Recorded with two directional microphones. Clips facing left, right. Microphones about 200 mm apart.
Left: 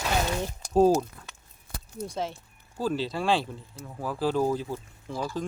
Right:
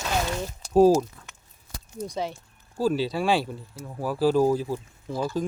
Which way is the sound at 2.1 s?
Centre (ahead or behind).